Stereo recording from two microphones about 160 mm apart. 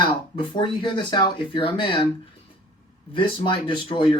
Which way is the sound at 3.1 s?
30° left (ahead or behind).